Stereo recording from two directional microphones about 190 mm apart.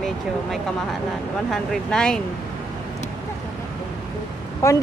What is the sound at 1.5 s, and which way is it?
Speech, 5° left (ahead or behind).